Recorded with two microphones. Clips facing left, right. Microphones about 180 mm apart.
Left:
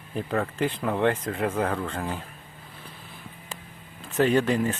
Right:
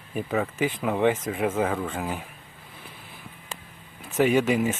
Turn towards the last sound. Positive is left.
turn(degrees=-10)  # may be behind; listen again after turning